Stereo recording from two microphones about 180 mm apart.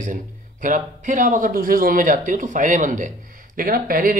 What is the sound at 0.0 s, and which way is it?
Speech, 45° right (ahead or behind).